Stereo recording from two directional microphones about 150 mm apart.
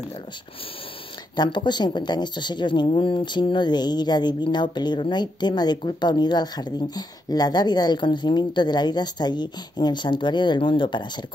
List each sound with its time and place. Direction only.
1.3 s a woman's voice: 30° left (ahead or behind)